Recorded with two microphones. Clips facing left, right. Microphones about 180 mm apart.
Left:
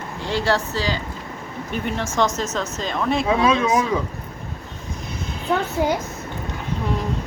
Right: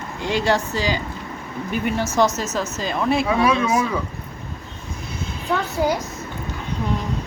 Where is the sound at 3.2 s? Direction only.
20° left (ahead or behind).